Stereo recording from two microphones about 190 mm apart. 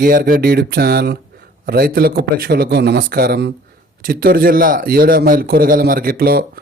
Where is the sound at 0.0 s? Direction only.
50° right (ahead or behind).